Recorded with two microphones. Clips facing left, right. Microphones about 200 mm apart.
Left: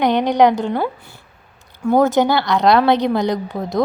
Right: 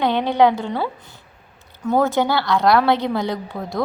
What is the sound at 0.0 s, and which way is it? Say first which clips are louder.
Speech: left 3 dB; 15° left (ahead or behind).